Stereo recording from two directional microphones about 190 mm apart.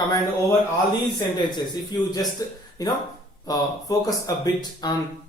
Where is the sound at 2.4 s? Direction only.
20° left (ahead or behind).